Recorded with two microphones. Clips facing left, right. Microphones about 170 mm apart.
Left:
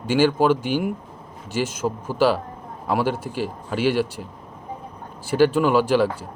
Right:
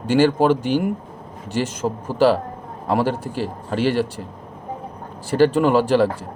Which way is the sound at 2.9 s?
10° left (ahead or behind).